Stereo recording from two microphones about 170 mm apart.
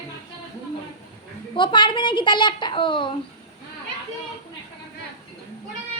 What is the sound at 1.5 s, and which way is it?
A child's voice, 30° left (ahead or behind).